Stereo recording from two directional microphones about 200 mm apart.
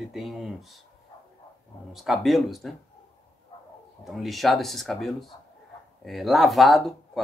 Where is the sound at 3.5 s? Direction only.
30° left (ahead or behind).